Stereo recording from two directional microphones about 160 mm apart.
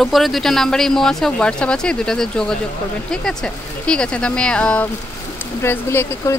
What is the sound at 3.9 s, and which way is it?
A woman's voice, 5° left (ahead or behind).